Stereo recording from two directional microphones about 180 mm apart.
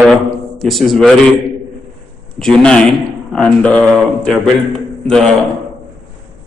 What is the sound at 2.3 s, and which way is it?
Speech, 5° left (ahead or behind).